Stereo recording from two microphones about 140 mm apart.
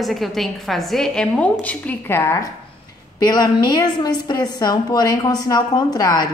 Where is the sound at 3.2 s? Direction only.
30° left (ahead or behind).